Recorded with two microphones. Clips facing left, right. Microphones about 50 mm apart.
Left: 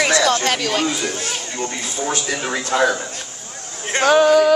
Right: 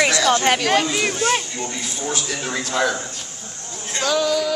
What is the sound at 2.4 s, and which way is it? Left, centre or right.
Speech, left.